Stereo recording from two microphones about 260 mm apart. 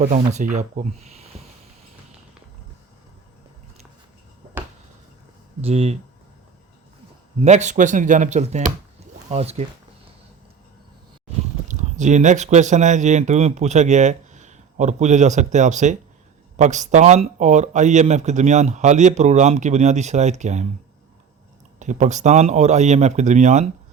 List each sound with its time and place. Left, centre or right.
0.0 s speech: right
5.6 s speech: right
7.3 s speech: right
11.7 s speech: right
21.8 s speech: right